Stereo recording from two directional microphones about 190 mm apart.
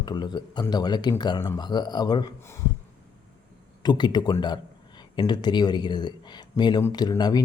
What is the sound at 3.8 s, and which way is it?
Speech, 20° left (ahead or behind).